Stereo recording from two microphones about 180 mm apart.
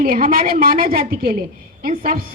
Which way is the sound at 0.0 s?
55° right (ahead or behind).